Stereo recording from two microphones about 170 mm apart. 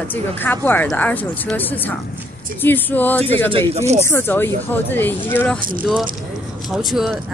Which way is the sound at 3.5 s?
35° right (ahead or behind).